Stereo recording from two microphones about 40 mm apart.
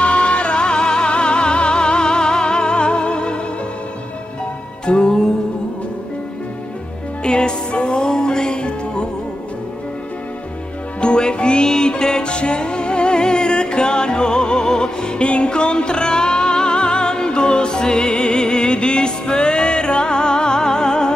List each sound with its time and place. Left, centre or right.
0.0 s music: left
4.8 s music: left
7.2 s music: left
11.0 s music: left